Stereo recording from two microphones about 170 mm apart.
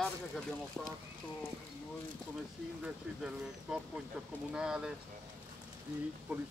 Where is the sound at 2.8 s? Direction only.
5° right (ahead or behind).